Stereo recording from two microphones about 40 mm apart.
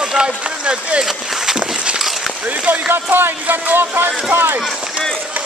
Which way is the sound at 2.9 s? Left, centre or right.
Right.